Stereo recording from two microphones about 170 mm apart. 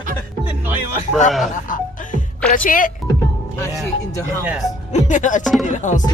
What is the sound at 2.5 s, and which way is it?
Music, 55° left (ahead or behind).